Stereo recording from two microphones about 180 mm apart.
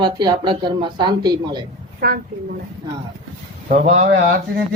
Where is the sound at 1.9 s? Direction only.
55° right (ahead or behind).